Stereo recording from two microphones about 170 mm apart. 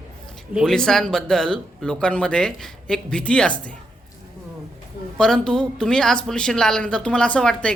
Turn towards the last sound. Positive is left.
turn(degrees=5)  # may be behind; listen again after turning